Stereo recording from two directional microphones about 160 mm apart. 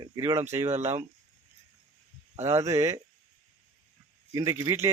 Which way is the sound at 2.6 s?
20° right (ahead or behind).